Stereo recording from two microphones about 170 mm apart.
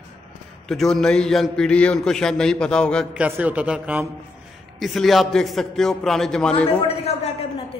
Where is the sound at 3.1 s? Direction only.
10° right (ahead or behind).